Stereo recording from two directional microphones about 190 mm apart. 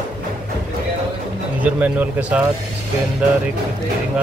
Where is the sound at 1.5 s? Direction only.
5° right (ahead or behind).